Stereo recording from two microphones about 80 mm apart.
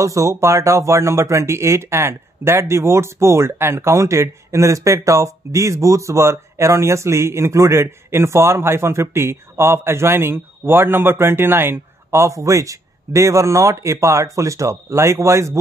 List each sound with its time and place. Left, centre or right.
0.0 s speech: right